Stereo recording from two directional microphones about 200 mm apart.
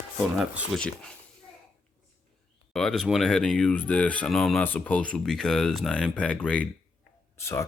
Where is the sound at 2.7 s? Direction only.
Centre (ahead or behind).